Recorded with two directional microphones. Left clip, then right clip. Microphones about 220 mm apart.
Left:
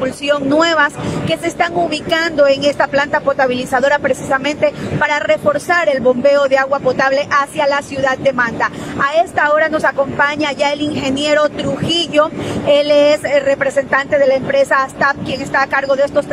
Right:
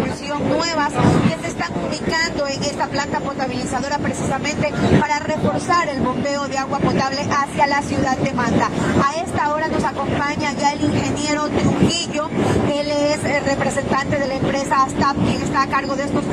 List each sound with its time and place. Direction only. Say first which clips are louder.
0.3 s vehicle: left 8 dB; 40° left (ahead or behind)
1.6 s speech: left 8 dB; 40° left (ahead or behind)
4.6 s speech: even; 40° left (ahead or behind)